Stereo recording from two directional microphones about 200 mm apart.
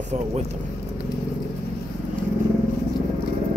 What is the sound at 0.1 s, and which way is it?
Speech, 35° right (ahead or behind).